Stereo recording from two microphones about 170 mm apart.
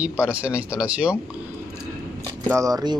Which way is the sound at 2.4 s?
20° right (ahead or behind).